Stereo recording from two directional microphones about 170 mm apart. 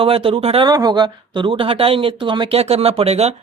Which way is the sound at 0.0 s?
30° right (ahead or behind).